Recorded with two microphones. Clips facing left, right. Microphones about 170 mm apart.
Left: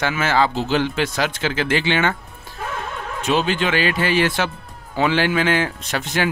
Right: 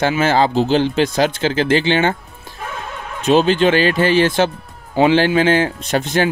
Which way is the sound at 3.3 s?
35° right (ahead or behind).